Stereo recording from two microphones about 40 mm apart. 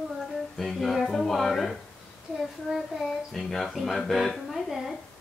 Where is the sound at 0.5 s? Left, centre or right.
Centre.